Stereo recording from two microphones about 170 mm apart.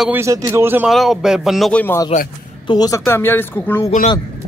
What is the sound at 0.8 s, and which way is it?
Speech, centre (ahead or behind).